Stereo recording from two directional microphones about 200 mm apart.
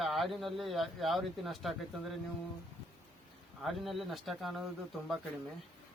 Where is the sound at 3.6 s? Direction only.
Centre (ahead or behind).